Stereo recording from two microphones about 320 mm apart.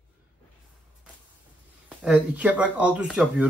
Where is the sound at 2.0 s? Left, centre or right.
Centre.